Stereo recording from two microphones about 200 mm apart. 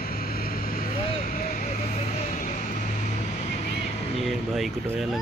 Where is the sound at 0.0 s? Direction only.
50° left (ahead or behind).